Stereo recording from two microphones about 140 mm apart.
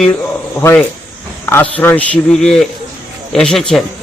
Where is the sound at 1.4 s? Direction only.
15° left (ahead or behind).